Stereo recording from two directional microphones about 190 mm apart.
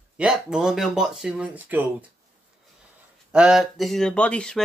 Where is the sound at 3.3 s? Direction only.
5° right (ahead or behind).